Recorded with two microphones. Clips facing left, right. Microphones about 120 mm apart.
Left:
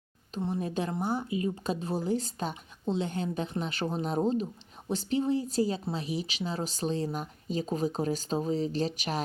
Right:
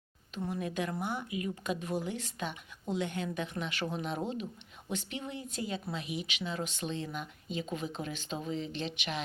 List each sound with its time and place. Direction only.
0.3 s speech: 30° left (ahead or behind)